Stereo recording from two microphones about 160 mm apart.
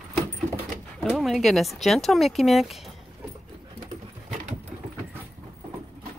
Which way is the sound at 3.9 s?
45° right (ahead or behind).